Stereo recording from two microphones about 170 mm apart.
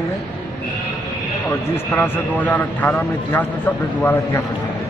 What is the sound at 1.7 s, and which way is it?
A man's voice, 15° left (ahead or behind).